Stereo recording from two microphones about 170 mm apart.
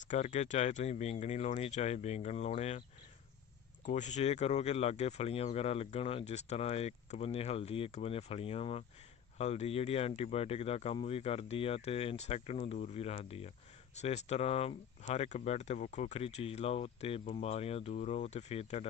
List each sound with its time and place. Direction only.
0.1 s speech: 45° left (ahead or behind)
3.8 s speech: 45° left (ahead or behind)